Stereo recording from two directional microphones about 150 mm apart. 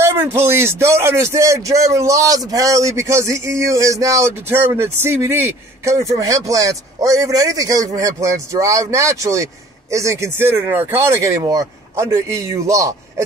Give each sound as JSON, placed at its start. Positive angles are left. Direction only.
{"t": 0.0, "sound": "speech", "side_deg": -15}